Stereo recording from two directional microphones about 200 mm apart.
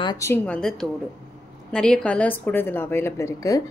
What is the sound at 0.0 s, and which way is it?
A woman's voice, 15° left (ahead or behind).